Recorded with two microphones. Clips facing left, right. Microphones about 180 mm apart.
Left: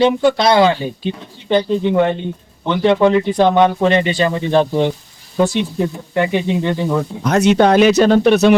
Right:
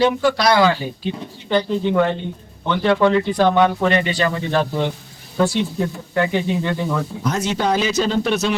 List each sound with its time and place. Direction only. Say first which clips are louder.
0.0 s speech: left 4 dB; 25° left (ahead or behind)
7.3 s speech: left 9 dB; 70° left (ahead or behind)